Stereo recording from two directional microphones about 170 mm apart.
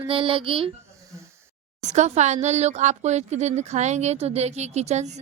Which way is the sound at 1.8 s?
45° right (ahead or behind).